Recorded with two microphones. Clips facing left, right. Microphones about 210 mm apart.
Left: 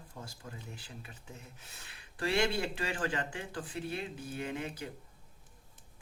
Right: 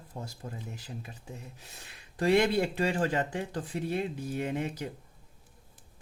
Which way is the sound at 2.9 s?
40° right (ahead or behind).